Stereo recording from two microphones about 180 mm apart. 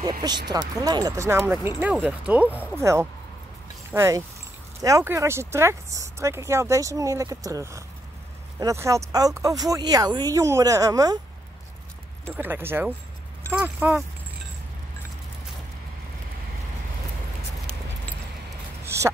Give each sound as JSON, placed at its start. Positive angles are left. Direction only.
{"t": 0.5, "sound": "speech", "side_deg": -20}
{"t": 12.4, "sound": "speech", "side_deg": -10}
{"t": 18.9, "sound": "a sound", "side_deg": -15}